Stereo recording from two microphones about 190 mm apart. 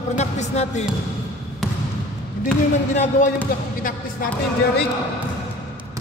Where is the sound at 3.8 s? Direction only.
45° left (ahead or behind).